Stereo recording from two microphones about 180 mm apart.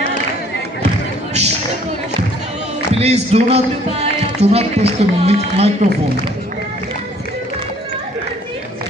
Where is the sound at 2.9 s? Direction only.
35° right (ahead or behind).